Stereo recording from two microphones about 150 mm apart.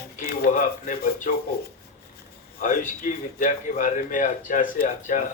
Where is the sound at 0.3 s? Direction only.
75° left (ahead or behind).